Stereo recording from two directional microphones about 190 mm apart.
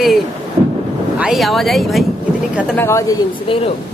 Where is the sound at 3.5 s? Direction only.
30° left (ahead or behind).